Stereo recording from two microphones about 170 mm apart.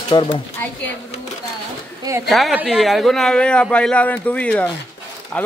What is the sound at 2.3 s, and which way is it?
A man's voice, centre (ahead or behind).